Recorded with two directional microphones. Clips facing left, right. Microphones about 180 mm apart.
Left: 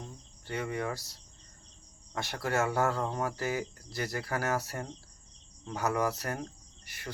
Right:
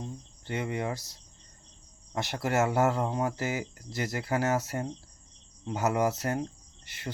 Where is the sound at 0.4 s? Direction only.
20° right (ahead or behind).